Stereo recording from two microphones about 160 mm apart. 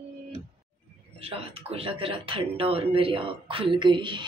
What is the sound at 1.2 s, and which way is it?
Speech, 35° right (ahead or behind).